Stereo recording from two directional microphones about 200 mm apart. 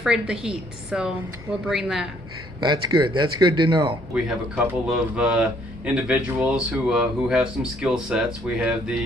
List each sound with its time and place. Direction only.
0.0 s speech: 5° right (ahead or behind)
2.6 s speech: 20° right (ahead or behind)
4.1 s speech: 5° right (ahead or behind)